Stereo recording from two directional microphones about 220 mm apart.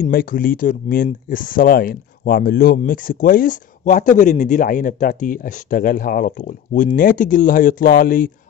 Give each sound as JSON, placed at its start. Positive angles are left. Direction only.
{"t": 0.0, "sound": "speech", "side_deg": 40}